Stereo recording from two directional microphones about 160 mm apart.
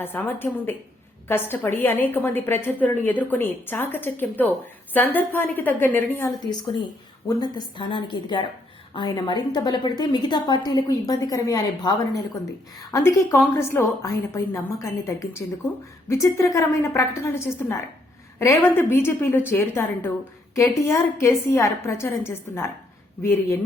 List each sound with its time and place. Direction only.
0.0 s a woman's voice: 10° left (ahead or behind)
7.3 s a woman's voice: 25° left (ahead or behind)